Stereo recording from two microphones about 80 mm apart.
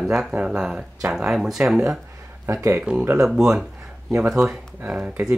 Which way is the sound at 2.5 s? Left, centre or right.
Right.